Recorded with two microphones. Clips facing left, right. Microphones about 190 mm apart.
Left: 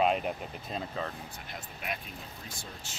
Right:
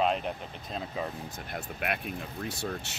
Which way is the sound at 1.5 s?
65° right (ahead or behind).